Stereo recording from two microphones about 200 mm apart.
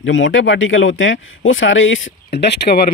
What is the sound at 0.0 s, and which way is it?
Speech, 70° left (ahead or behind).